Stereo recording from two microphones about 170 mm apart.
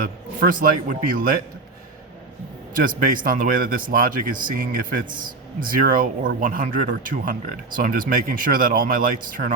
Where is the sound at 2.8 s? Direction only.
55° right (ahead or behind).